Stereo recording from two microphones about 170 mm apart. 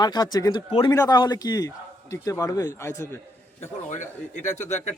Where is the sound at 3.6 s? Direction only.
45° left (ahead or behind).